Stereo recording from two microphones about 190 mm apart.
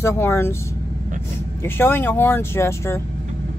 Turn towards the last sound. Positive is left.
turn(degrees=15)  # may be behind; listen again after turning